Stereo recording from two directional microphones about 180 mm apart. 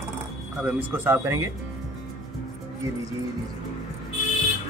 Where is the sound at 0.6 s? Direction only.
10° right (ahead or behind).